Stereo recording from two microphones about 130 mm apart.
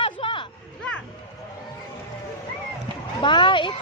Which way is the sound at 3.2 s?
35° left (ahead or behind).